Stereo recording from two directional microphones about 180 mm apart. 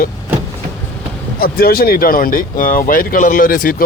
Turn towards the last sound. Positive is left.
turn(degrees=50)  # may be behind; listen again after turning